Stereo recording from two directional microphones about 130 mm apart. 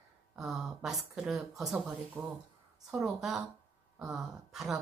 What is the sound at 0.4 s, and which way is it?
A woman's voice, centre (ahead or behind).